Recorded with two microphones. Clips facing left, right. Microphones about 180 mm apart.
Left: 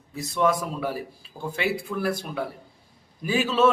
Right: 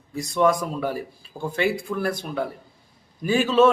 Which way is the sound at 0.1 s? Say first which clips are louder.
Right 3 dB; 5° left (ahead or behind).